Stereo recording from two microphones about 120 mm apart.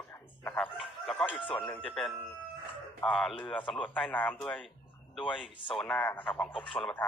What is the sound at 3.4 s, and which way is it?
Speech, 45° left (ahead or behind).